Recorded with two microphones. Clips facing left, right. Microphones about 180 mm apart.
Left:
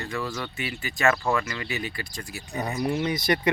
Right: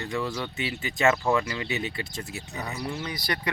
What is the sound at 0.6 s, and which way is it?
Speech, 20° right (ahead or behind).